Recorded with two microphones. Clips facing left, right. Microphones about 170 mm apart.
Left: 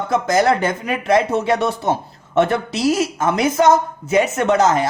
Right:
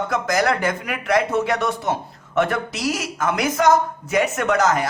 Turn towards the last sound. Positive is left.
turn(degrees=25)  # may be behind; listen again after turning